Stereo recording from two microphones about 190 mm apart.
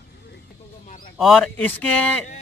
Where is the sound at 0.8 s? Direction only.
45° left (ahead or behind).